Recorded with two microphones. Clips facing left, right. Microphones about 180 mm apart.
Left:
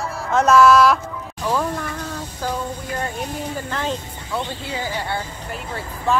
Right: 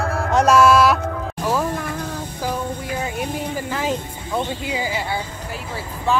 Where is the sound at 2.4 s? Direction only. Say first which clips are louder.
Right 1 dB; 10° right (ahead or behind).